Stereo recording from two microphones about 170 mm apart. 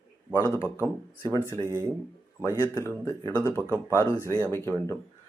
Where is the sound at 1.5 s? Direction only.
20° right (ahead or behind).